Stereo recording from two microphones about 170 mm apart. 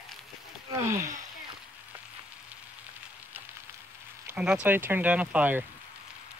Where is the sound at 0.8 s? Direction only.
15° right (ahead or behind).